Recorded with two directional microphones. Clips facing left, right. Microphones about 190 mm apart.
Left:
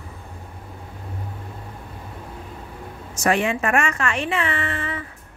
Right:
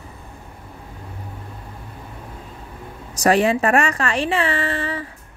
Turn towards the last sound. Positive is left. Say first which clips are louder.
# right 4 dB
turn(degrees=-35)  # may be behind; listen again after turning